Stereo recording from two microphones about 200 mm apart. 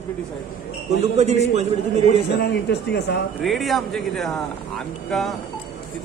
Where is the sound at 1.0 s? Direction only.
35° right (ahead or behind).